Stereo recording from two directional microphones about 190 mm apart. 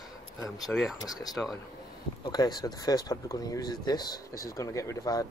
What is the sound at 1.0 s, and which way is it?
Speech, 20° left (ahead or behind).